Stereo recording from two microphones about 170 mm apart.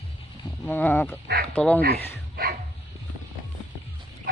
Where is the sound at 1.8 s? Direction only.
65° right (ahead or behind).